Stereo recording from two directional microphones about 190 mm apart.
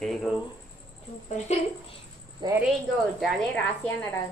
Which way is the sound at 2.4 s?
25° right (ahead or behind).